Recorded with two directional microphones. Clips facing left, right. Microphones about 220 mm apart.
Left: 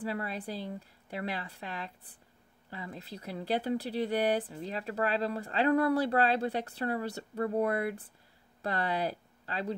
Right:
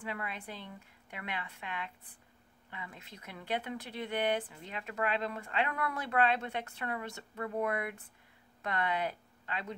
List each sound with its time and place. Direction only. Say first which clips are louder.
0.0 s speech: left 6 dB; 35° left (ahead or behind)